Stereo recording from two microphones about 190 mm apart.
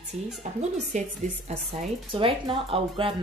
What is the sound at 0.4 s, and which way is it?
Speech, 40° right (ahead or behind).